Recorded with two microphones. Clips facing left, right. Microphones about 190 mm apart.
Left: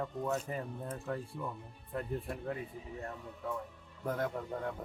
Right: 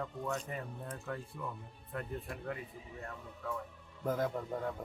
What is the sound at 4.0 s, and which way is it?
Speech, centre (ahead or behind).